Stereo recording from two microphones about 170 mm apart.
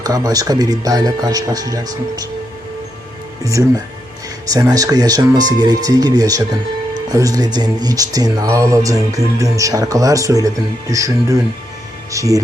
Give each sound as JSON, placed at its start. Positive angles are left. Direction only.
{"t": 0.0, "sound": "speech", "side_deg": -20}
{"t": 3.4, "sound": "speech", "side_deg": -20}